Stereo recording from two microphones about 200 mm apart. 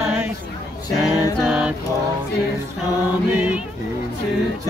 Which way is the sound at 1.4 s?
5° right (ahead or behind).